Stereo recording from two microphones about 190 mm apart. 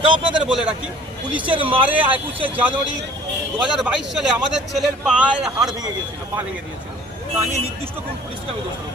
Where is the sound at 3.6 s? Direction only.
Centre (ahead or behind).